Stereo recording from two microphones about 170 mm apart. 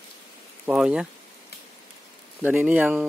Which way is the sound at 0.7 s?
5° right (ahead or behind).